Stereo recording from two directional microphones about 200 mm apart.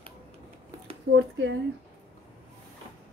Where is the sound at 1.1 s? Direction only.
65° right (ahead or behind).